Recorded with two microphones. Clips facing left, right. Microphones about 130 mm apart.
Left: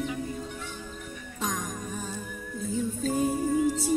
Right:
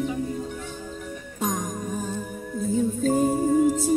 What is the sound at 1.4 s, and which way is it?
Music, 45° right (ahead or behind).